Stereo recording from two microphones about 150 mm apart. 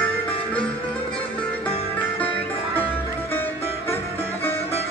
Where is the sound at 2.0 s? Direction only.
10° left (ahead or behind).